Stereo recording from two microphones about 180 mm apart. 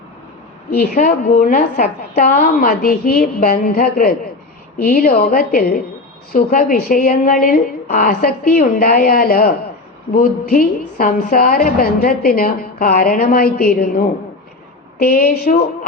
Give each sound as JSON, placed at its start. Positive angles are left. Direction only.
{"t": 0.7, "sound": "a woman's voice", "side_deg": 55}